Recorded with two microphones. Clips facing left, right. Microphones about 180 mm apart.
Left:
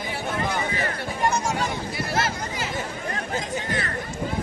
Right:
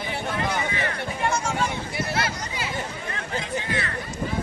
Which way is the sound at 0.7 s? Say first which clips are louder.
Even; 40° left (ahead or behind).